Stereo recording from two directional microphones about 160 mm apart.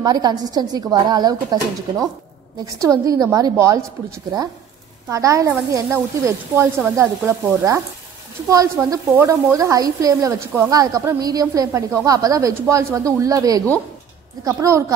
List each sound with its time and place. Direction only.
0.0 s speech: 25° right (ahead or behind)
5.1 s speech: 20° right (ahead or behind)